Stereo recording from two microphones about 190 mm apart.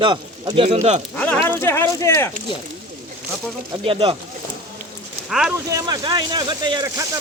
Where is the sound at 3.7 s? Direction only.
30° right (ahead or behind).